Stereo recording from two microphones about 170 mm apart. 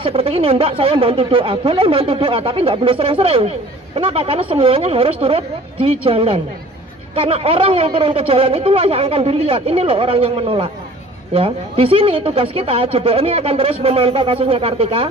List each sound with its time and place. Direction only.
0.0 s speech: 35° right (ahead or behind)